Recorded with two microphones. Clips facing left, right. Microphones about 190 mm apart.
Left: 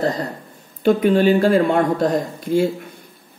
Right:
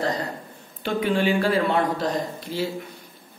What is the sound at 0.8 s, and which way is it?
A man's voice, 40° left (ahead or behind).